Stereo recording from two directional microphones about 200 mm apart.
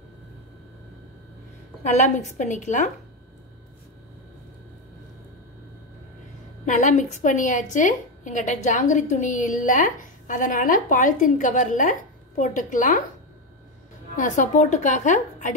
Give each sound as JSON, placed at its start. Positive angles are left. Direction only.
{"t": 1.8, "sound": "a woman's voice", "side_deg": 35}
{"t": 6.6, "sound": "a woman's voice", "side_deg": 35}
{"t": 14.1, "sound": "a woman's voice", "side_deg": 40}